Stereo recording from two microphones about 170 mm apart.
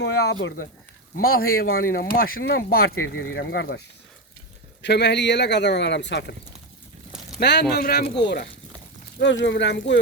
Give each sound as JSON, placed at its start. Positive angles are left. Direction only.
{"t": 0.0, "sound": "speech", "side_deg": 80}
{"t": 4.8, "sound": "speech", "side_deg": 85}
{"t": 7.3, "sound": "speech", "side_deg": 80}
{"t": 8.2, "sound": "speech", "side_deg": 80}